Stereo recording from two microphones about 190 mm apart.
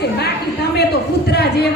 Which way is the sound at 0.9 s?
60° left (ahead or behind).